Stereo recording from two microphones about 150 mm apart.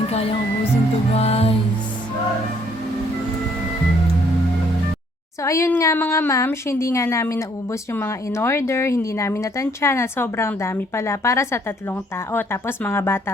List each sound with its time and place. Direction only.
0.1 s music: 40° left (ahead or behind)
5.4 s speech: 20° left (ahead or behind)